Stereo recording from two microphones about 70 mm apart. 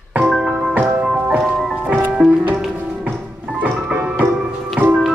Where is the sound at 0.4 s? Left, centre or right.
Centre.